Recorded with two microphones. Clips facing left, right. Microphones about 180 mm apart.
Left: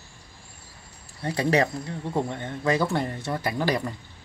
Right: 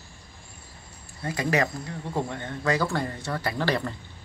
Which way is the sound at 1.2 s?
30° left (ahead or behind).